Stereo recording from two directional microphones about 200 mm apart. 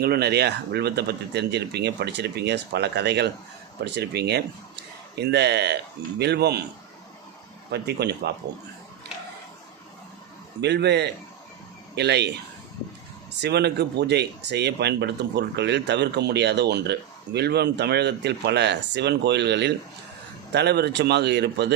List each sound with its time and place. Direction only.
0.0 s speech: 55° right (ahead or behind)
7.7 s speech: 55° right (ahead or behind)
10.6 s speech: 55° right (ahead or behind)
13.4 s speech: 55° right (ahead or behind)